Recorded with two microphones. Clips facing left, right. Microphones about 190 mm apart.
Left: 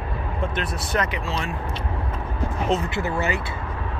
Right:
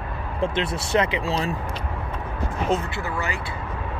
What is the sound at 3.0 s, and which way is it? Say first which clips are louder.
Speech: left 4 dB; 20° left (ahead or behind).